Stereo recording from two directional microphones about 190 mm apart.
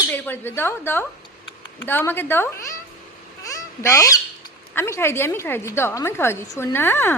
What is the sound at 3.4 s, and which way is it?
Honk, 15° left (ahead or behind).